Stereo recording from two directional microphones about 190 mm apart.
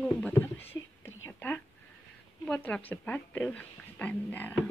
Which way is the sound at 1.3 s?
10° left (ahead or behind).